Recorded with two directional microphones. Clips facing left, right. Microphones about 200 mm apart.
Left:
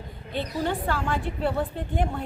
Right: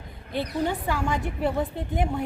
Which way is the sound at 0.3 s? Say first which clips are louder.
Right 1 dB; 10° right (ahead or behind).